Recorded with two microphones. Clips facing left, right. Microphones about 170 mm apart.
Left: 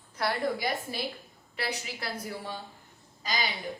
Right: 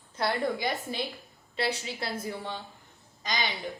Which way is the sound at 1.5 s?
25° right (ahead or behind).